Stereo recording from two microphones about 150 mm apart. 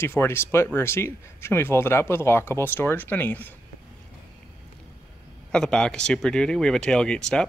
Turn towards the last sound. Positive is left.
turn(degrees=5)  # may be behind; listen again after turning